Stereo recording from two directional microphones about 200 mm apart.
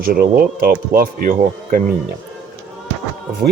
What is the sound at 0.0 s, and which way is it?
Speech, 50° right (ahead or behind).